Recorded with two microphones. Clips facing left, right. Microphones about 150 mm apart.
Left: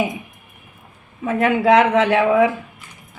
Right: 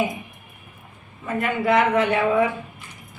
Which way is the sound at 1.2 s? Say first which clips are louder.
Left 6 dB; 90° left.